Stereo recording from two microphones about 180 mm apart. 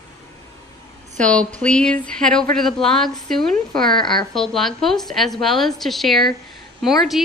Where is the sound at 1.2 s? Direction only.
5° left (ahead or behind).